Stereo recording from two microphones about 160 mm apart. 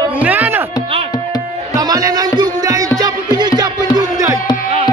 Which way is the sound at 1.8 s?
25° right (ahead or behind).